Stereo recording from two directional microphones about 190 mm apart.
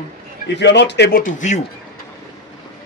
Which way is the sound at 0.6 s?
65° left (ahead or behind).